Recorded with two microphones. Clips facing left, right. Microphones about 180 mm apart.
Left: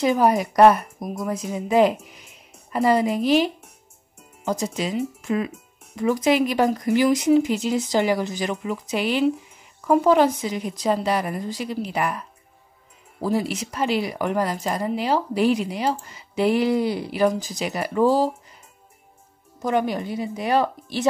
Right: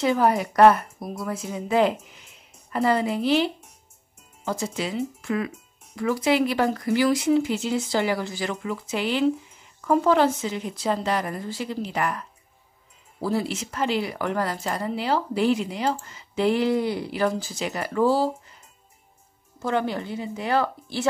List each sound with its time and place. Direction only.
0.0 s a woman's voice: 15° left (ahead or behind)
19.6 s a woman's voice: 15° left (ahead or behind)